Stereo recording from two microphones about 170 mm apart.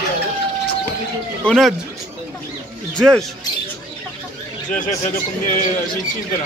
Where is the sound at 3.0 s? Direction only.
Centre (ahead or behind).